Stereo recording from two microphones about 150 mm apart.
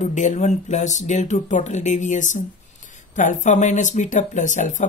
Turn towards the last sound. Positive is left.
turn(degrees=55)  # may be behind; listen again after turning